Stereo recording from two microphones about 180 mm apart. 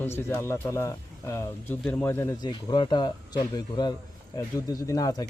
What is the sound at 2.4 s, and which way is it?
Speech, 25° left (ahead or behind).